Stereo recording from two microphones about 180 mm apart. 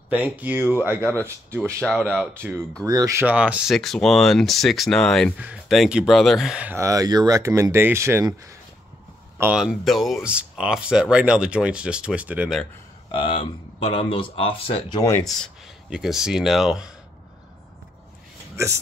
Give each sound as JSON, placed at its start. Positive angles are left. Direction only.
{"t": 0.1, "sound": "speech", "side_deg": -10}
{"t": 1.8, "sound": "speech", "side_deg": 5}
{"t": 2.8, "sound": "speech", "side_deg": -20}
{"t": 9.4, "sound": "speech", "side_deg": -5}
{"t": 13.1, "sound": "speech", "side_deg": 30}
{"t": 15.2, "sound": "speech", "side_deg": 0}